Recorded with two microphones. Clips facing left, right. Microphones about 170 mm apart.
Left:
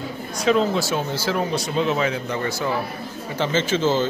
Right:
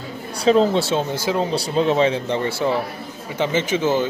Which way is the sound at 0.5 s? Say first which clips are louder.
Right 4 dB; 30° right (ahead or behind).